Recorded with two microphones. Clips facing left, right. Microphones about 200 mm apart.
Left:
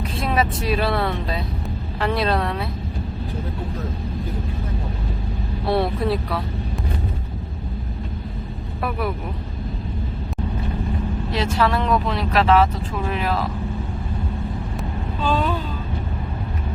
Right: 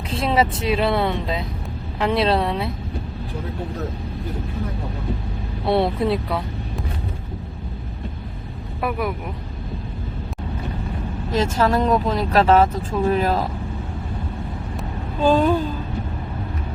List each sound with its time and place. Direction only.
0.1 s speech: 25° right (ahead or behind)
5.6 s speech: 25° right (ahead or behind)
8.8 s speech: 10° right (ahead or behind)
11.3 s speech: 45° right (ahead or behind)
15.2 s speech: 45° right (ahead or behind)